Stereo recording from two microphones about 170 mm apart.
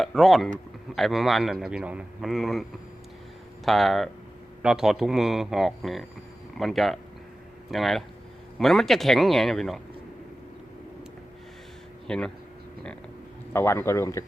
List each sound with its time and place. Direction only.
0.0 s a man's voice: centre (ahead or behind)
3.7 s a man's voice: centre (ahead or behind)
12.0 s speech: 5° left (ahead or behind)
13.5 s a man's voice: 15° left (ahead or behind)